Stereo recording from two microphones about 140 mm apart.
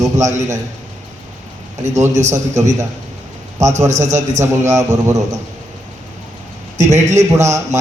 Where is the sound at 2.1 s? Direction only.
55° right (ahead or behind).